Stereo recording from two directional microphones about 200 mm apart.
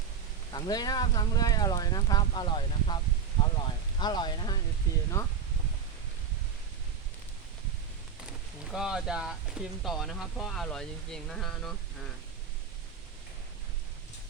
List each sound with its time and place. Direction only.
0.5 s speech: 20° left (ahead or behind)
3.4 s a sound: 20° left (ahead or behind)
4.0 s speech: 20° left (ahead or behind)
8.7 s speech: 5° right (ahead or behind)